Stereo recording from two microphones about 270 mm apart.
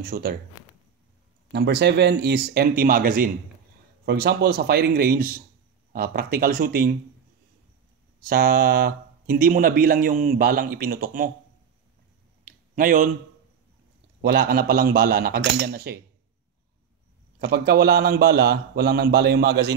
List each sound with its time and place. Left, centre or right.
0.0 s speech: right
1.5 s speech: right
8.2 s speech: right
12.4 s a sound: right
14.2 s speech: right
17.4 s speech: right